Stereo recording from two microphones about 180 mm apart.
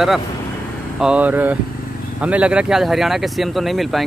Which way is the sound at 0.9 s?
5° right (ahead or behind).